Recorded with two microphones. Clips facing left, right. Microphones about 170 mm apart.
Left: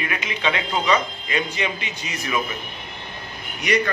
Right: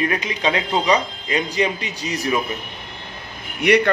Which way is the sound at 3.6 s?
60° right (ahead or behind).